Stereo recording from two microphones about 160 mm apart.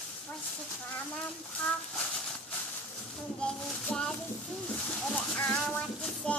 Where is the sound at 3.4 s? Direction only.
5° left (ahead or behind).